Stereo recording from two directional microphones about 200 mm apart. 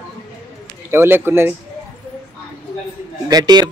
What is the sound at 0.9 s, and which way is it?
Speech, 10° right (ahead or behind).